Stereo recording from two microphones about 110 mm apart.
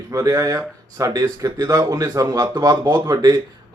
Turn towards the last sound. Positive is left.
turn(degrees=-35)  # may be behind; listen again after turning